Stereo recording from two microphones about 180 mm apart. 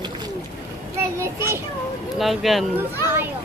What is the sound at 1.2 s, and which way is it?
Speech, 15° right (ahead or behind).